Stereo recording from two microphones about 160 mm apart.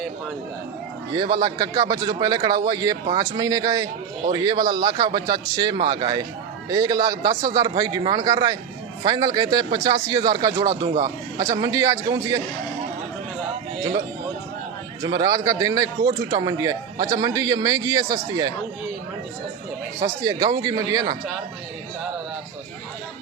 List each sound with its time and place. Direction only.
1.1 s a man's voice: 25° right (ahead or behind)
15.0 s a man's voice: 20° right (ahead or behind)
20.0 s a man's voice: 20° right (ahead or behind)